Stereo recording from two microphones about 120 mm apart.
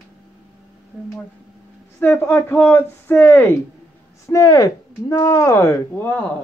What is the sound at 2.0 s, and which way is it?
Speech, 15° left (ahead or behind).